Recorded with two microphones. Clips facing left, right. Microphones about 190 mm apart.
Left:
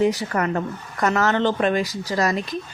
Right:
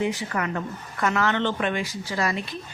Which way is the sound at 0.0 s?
40° left (ahead or behind).